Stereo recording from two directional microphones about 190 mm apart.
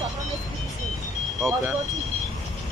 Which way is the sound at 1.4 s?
15° right (ahead or behind).